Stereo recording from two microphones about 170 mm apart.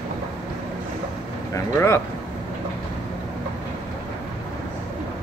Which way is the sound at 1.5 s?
15° left (ahead or behind).